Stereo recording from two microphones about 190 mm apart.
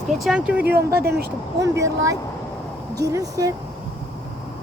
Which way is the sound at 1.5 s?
15° right (ahead or behind).